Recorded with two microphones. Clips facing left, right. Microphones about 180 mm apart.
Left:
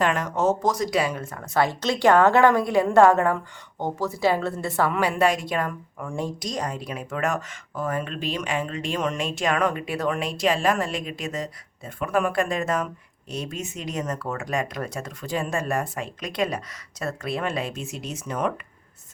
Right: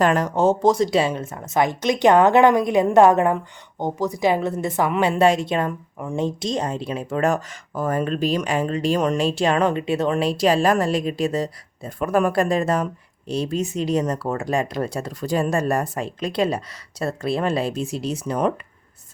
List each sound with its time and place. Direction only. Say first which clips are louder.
0.0 s a woman's voice: right 5 dB; 35° right (ahead or behind)